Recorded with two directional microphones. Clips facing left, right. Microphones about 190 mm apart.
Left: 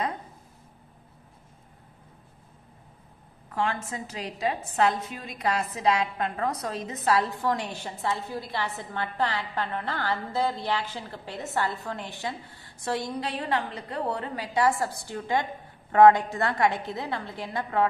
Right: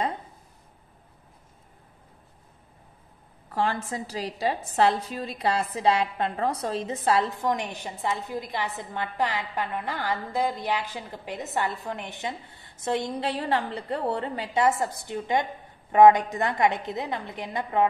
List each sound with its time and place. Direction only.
3.5 s a woman's voice: 35° right (ahead or behind); by 17.8 s 20° right (ahead or behind)